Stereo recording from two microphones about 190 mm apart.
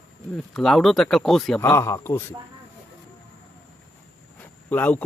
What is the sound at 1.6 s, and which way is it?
Speech, 15° left (ahead or behind).